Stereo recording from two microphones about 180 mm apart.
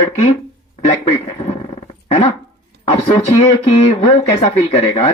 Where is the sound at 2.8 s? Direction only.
30° left (ahead or behind).